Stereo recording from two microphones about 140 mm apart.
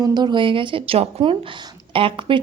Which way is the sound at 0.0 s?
30° right (ahead or behind).